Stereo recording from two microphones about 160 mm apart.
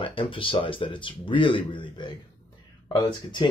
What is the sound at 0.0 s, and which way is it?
Speech, 35° left (ahead or behind).